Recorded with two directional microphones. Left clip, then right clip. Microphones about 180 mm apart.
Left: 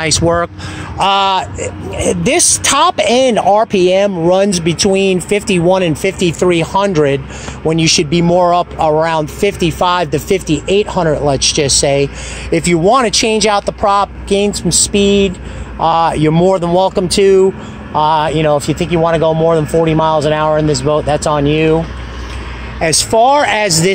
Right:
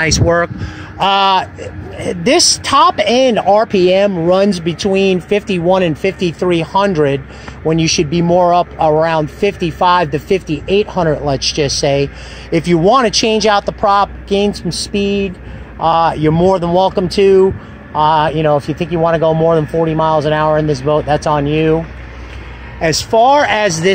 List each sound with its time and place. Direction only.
0.0 s speech: 20° left (ahead or behind)
0.9 s speech: 5° left (ahead or behind)